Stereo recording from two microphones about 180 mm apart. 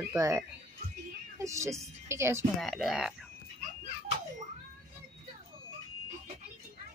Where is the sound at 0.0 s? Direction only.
15° right (ahead or behind).